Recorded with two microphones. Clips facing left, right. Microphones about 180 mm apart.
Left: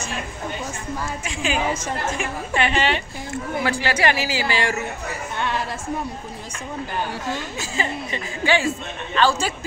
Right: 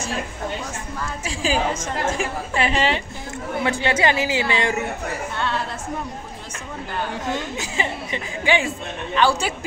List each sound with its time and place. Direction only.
1.2 s a woman's voice: 30° right (ahead or behind)
7.5 s a man's voice: 15° right (ahead or behind)